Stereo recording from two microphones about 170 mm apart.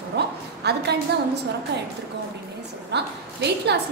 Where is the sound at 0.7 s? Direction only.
75° right (ahead or behind).